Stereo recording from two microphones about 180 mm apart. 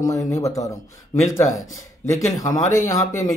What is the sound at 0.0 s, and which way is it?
Speech, 20° left (ahead or behind).